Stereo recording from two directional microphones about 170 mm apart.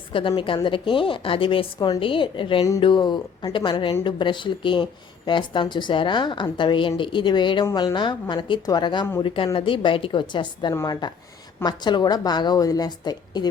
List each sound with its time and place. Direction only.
0.1 s a woman's voice: 30° left (ahead or behind)